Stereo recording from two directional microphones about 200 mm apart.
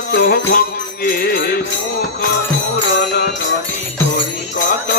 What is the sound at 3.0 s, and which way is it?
Music, 50° left (ahead or behind).